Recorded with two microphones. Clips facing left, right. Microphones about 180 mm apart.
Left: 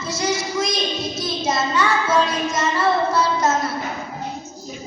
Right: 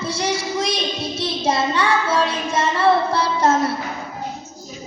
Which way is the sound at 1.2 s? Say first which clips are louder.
Right 3 dB; 30° right (ahead or behind).